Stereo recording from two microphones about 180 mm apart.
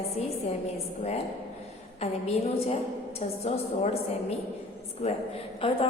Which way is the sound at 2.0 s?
35° left (ahead or behind).